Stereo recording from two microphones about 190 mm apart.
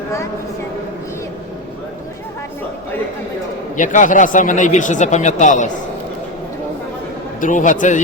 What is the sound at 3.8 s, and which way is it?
Speech, 45° left (ahead or behind).